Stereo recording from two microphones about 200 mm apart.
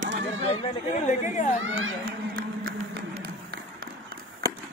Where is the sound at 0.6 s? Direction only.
35° left (ahead or behind).